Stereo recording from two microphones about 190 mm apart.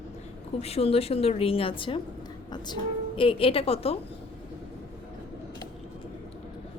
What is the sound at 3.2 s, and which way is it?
Speech, 30° left (ahead or behind).